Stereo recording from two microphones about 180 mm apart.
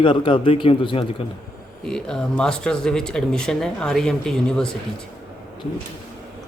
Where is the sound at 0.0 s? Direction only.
30° left (ahead or behind).